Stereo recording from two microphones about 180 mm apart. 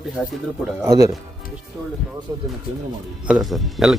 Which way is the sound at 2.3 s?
20° right (ahead or behind).